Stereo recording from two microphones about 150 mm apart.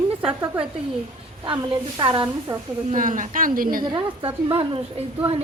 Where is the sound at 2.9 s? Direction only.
60° right (ahead or behind).